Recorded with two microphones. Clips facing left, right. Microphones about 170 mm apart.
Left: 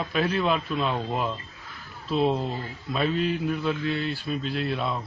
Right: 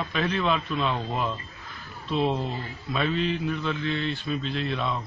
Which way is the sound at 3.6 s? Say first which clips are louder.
Left 1 dB; 10° left (ahead or behind).